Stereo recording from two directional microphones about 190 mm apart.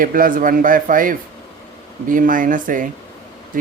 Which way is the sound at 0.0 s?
45° right (ahead or behind).